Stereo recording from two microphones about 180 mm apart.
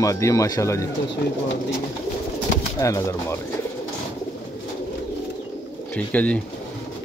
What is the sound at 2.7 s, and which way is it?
Speech, 15° left (ahead or behind).